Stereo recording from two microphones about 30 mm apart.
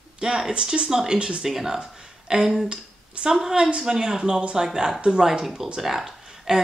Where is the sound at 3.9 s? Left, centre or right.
Right.